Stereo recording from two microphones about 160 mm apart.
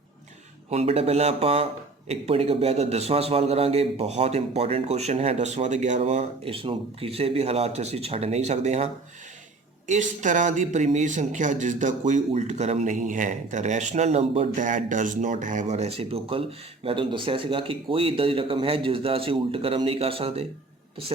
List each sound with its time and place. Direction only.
0.7 s a man's voice: 40° right (ahead or behind)